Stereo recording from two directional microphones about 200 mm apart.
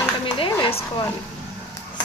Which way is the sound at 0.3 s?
25° left (ahead or behind).